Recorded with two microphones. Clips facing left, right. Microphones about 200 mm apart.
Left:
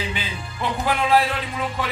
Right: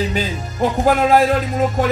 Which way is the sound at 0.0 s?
45° right (ahead or behind).